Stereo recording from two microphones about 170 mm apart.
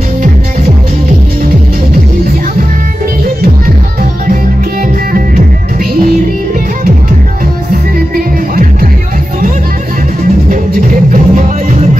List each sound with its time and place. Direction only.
10.5 s music: 50° right (ahead or behind)